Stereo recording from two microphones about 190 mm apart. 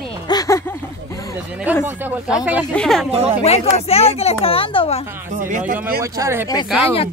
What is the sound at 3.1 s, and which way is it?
Speech, 30° right (ahead or behind).